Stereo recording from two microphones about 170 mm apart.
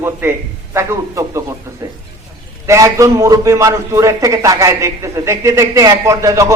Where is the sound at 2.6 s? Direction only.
20° right (ahead or behind).